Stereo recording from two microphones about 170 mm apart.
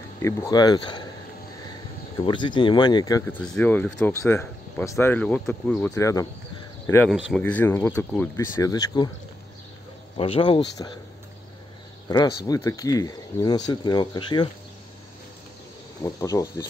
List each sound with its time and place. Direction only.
0.2 s speech: 20° left (ahead or behind)
2.2 s speech: 25° left (ahead or behind)
3.3 s speech: 5° left (ahead or behind)
5.9 s speech: 20° left (ahead or behind)
7.1 s speech: centre (ahead or behind); by 9.1 s 25° left (ahead or behind)
10.1 s speech: 30° left (ahead or behind)
12.1 s speech: 25° left (ahead or behind)
16.0 s speech: 20° left (ahead or behind)